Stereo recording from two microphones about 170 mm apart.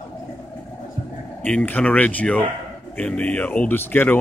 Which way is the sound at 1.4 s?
10° left (ahead or behind).